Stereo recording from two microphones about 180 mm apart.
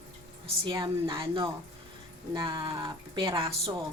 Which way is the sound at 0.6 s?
25° right (ahead or behind).